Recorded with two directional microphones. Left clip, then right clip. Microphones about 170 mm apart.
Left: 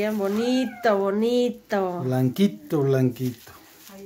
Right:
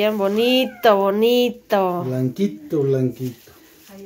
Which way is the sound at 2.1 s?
45° left (ahead or behind).